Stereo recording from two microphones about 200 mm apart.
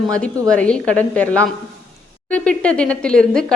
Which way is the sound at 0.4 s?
5° left (ahead or behind).